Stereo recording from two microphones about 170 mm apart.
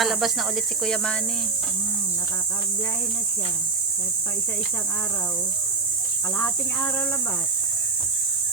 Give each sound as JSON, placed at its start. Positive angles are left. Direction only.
{"t": 0.0, "sound": "speech", "side_deg": 0}